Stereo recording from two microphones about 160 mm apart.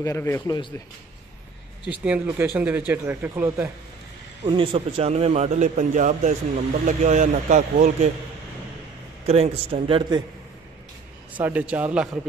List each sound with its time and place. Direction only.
0.0 s speech: 15° left (ahead or behind)
2.0 s speech: 10° right (ahead or behind)
4.5 s a man's voice: 35° right (ahead or behind)
9.2 s a man's voice: 40° right (ahead or behind)
11.3 s speech: 10° right (ahead or behind)